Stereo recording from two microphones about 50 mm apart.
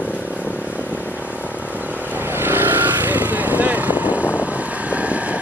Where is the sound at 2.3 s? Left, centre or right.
Right.